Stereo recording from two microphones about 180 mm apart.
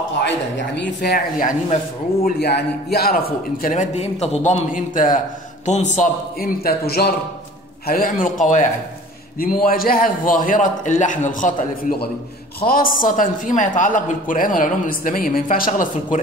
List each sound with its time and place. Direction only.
0.7 s speech: 70° left (ahead or behind)
2.2 s a man's voice: 65° left (ahead or behind)
3.6 s speech: 45° left (ahead or behind)